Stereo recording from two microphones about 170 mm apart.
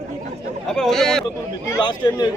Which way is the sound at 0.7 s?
Centre (ahead or behind).